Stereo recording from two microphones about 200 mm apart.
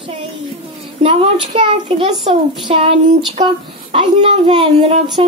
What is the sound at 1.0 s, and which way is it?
A child's voice, 30° right (ahead or behind).